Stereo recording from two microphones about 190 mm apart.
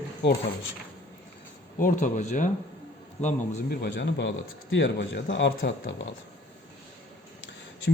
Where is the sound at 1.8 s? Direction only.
45° left (ahead or behind).